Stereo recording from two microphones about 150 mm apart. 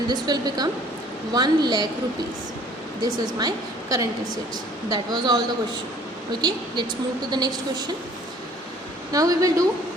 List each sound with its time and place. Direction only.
0.1 s a woman's voice: 30° right (ahead or behind)
3.0 s a woman's voice: 25° right (ahead or behind)
9.1 s a woman's voice: 25° right (ahead or behind)